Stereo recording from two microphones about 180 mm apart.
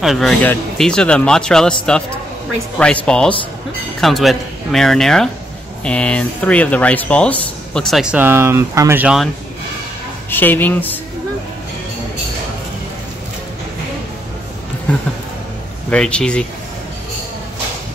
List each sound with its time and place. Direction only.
0.0 s speech: centre (ahead or behind)
2.8 s speech: 5° left (ahead or behind)
10.3 s a woman's voice: 10° left (ahead or behind)
14.9 s speech: 10° left (ahead or behind)